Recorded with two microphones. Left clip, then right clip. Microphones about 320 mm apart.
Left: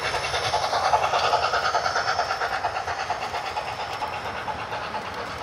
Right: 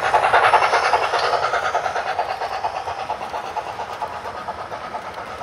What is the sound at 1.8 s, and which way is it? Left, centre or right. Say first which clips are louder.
Train: right 2 dB; right.